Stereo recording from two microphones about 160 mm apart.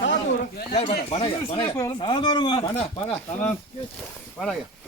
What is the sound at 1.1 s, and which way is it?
Speech, 35° left (ahead or behind).